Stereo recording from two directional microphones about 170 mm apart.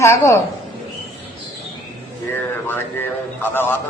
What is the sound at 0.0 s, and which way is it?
Speech, 15° left (ahead or behind).